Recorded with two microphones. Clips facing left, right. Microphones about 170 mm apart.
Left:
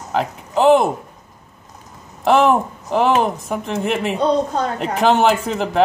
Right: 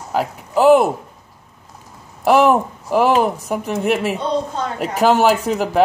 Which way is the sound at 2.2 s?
10° right (ahead or behind).